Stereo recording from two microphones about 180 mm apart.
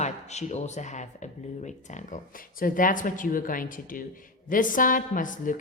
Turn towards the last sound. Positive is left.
turn(degrees=50)  # may be behind; listen again after turning